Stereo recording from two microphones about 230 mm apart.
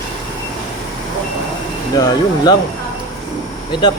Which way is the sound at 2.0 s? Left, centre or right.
Centre.